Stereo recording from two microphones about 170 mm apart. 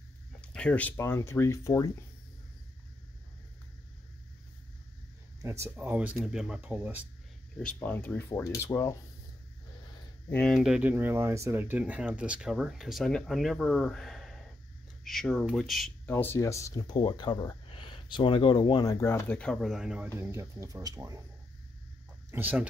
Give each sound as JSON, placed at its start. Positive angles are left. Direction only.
{"t": 0.4, "sound": "speech", "side_deg": 5}
{"t": 5.4, "sound": "speech", "side_deg": -15}
{"t": 7.5, "sound": "speech", "side_deg": 10}
{"t": 10.3, "sound": "speech", "side_deg": 5}
{"t": 16.1, "sound": "speech", "side_deg": 10}
{"t": 20.2, "sound": "speech", "side_deg": -15}
{"t": 22.3, "sound": "speech", "side_deg": -10}